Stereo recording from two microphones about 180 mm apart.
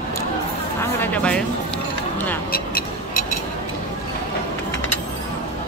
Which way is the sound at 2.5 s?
55° left (ahead or behind).